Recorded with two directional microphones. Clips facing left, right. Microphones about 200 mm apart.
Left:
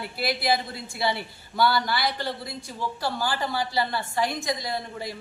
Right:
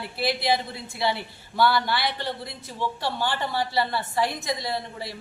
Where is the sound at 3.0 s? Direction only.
5° left (ahead or behind).